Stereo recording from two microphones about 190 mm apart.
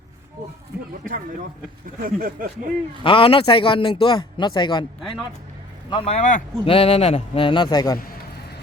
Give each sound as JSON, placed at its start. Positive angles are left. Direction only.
{"t": 1.0, "sound": "speech", "side_deg": -45}
{"t": 3.0, "sound": "a man's voice", "side_deg": 30}
{"t": 5.9, "sound": "speech", "side_deg": 30}
{"t": 6.7, "sound": "a man's voice", "side_deg": 30}